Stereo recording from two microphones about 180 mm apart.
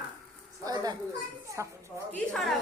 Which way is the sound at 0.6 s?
20° right (ahead or behind).